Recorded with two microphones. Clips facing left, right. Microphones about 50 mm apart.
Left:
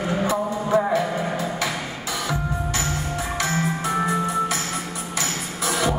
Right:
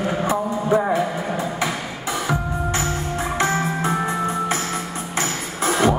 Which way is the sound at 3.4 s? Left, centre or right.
Right.